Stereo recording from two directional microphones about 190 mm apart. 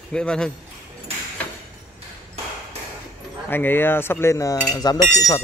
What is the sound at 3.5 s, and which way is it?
Cutlery, 10° left (ahead or behind).